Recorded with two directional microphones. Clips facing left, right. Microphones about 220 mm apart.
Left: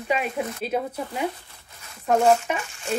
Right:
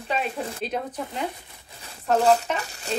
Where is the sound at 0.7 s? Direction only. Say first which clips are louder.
Left 3 dB; 5° left (ahead or behind).